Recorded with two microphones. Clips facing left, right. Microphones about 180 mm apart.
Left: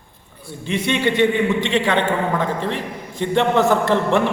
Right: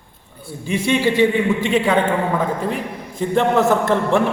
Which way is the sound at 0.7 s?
5° right (ahead or behind).